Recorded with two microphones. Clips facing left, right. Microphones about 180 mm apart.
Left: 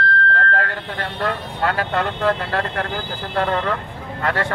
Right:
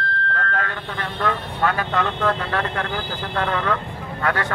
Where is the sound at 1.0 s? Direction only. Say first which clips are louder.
Even; 30° left (ahead or behind).